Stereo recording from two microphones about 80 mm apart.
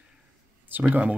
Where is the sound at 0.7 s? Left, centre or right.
Right.